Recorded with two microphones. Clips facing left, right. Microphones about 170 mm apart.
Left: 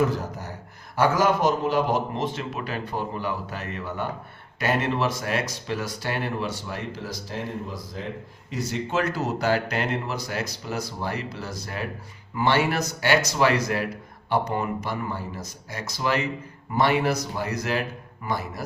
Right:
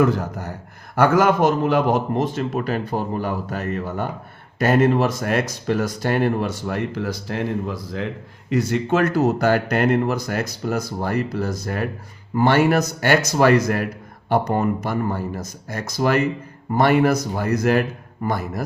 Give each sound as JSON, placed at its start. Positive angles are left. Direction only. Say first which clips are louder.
{"t": 0.0, "sound": "speech", "louder": "right 5 dB", "side_deg": -60}